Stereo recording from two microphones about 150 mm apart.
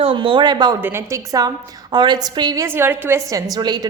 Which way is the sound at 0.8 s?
15° right (ahead or behind).